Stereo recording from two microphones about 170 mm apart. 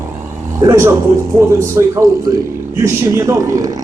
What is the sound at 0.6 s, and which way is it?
A man's voice, 15° right (ahead or behind).